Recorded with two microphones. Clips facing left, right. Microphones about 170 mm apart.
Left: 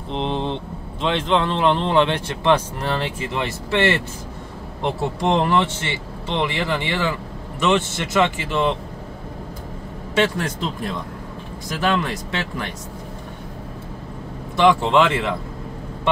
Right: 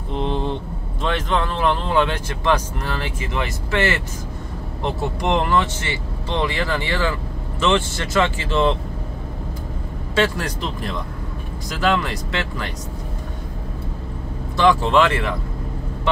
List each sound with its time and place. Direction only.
0.1 s vehicle: 20° left (ahead or behind)
1.0 s speech: 25° left (ahead or behind)
10.1 s speech: 20° left (ahead or behind)
11.8 s speech: 20° left (ahead or behind)
14.6 s speech: 20° left (ahead or behind)